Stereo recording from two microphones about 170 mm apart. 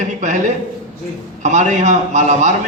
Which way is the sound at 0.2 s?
45° right (ahead or behind).